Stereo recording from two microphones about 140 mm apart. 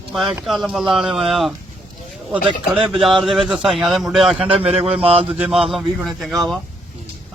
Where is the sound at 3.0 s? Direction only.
5° right (ahead or behind).